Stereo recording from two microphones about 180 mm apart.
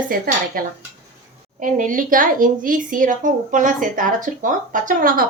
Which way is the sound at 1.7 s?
45° right (ahead or behind).